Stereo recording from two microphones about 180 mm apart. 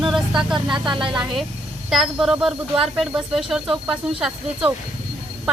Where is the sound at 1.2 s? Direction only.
Centre (ahead or behind).